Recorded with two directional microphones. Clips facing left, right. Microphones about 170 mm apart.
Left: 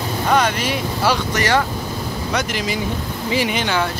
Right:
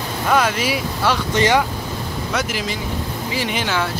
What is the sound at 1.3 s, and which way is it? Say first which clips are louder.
Speech: right 2 dB; 20° right (ahead or behind).